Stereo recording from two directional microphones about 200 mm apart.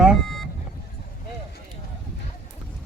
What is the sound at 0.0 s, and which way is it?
Vehicle, centre (ahead or behind).